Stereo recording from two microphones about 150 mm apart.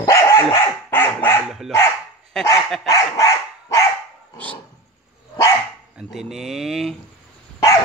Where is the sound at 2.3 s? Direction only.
5° left (ahead or behind).